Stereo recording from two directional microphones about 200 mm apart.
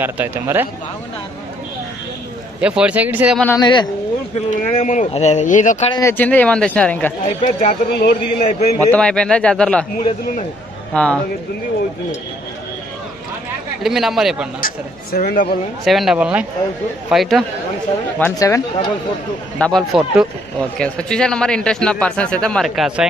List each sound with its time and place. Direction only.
0.0 s speech: 10° right (ahead or behind)
2.6 s speech: 5° right (ahead or behind)
3.5 s speech: 20° left (ahead or behind)
4.4 s a man's voice: 35° left (ahead or behind)
5.9 s speech: 15° left (ahead or behind)
7.2 s a man's voice: 40° left (ahead or behind)
8.9 s speech: 5° left (ahead or behind)
10.9 s a man's voice: 5° left (ahead or behind)
13.8 s speech: centre (ahead or behind)
14.6 s speech: 45° left (ahead or behind)
15.8 s speech: centre (ahead or behind)
18.2 s speech: 15° left (ahead or behind)
19.6 s speech: centre (ahead or behind)